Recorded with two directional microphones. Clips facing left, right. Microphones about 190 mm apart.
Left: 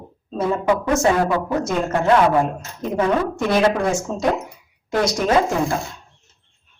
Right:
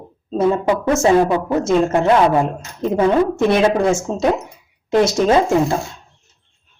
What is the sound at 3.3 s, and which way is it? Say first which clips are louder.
Speech: right 3 dB; 25° right (ahead or behind).